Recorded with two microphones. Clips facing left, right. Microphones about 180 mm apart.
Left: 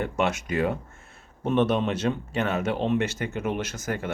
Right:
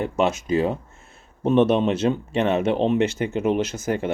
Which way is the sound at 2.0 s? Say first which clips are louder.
Right 5 dB; 25° right (ahead or behind).